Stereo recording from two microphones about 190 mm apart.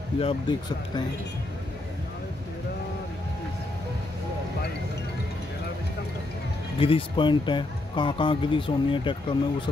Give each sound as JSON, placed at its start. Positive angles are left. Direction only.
{"t": 0.2, "sound": "speech", "side_deg": 25}
{"t": 6.8, "sound": "speech", "side_deg": 30}